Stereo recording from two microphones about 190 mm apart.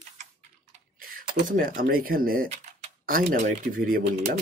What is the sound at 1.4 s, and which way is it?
Speech, 45° right (ahead or behind).